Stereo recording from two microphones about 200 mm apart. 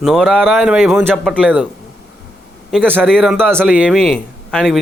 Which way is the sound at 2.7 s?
5° right (ahead or behind).